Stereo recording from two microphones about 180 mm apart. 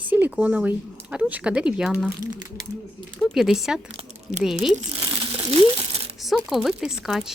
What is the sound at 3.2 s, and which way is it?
Speech, centre (ahead or behind).